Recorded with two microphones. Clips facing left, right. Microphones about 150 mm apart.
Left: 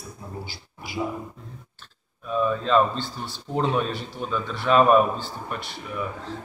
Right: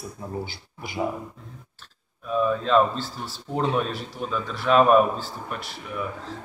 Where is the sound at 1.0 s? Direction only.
60° right (ahead or behind).